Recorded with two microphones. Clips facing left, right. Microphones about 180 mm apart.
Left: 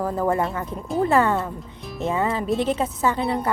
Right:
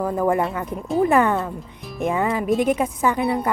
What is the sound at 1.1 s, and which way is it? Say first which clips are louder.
A woman's voice: right 1 dB; 15° right (ahead or behind).